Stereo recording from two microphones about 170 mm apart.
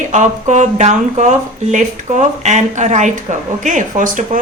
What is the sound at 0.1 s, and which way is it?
Speech, 45° right (ahead or behind).